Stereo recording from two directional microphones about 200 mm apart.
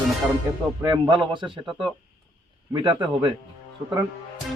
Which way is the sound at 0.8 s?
20° right (ahead or behind).